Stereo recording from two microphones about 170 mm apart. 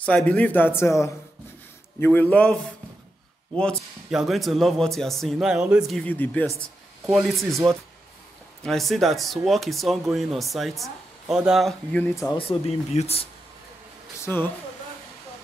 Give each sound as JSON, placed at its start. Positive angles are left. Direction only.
{"t": 0.0, "sound": "a man's voice", "side_deg": 5}
{"t": 7.1, "sound": "speech", "side_deg": 0}
{"t": 8.6, "sound": "speech", "side_deg": 0}
{"t": 12.0, "sound": "a man's voice", "side_deg": 15}
{"t": 12.4, "sound": "speech", "side_deg": 35}
{"t": 14.2, "sound": "speech", "side_deg": 10}